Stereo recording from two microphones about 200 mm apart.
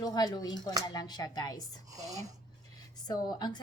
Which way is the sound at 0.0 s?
20° left (ahead or behind).